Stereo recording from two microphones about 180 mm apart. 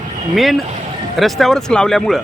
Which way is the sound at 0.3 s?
Centre (ahead or behind).